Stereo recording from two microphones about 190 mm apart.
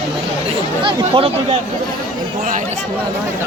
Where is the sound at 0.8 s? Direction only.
30° right (ahead or behind).